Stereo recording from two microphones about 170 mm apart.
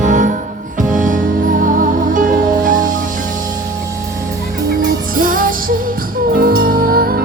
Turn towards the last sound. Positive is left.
turn(degrees=-60)  # may be behind; listen again after turning